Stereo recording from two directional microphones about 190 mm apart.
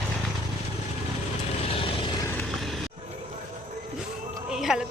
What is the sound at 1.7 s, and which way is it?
Vehicle, 30° left (ahead or behind).